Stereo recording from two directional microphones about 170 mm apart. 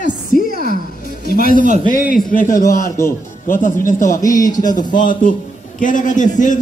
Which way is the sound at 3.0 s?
15° left (ahead or behind).